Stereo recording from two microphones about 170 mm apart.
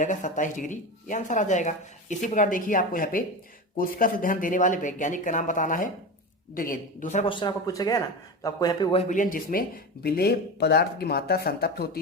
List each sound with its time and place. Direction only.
0.0 s speech: 45° left (ahead or behind)
7.3 s speech: 25° left (ahead or behind)
8.9 s speech: 40° left (ahead or behind); by 11.9 s 65° left (ahead or behind)